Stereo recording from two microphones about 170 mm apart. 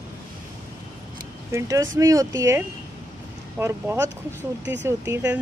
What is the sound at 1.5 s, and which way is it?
Speech, 20° right (ahead or behind).